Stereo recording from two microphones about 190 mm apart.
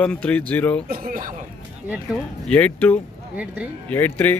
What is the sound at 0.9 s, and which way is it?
Speech, 45° right (ahead or behind).